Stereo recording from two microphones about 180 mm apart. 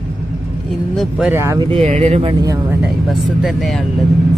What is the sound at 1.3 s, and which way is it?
Speech, 15° right (ahead or behind).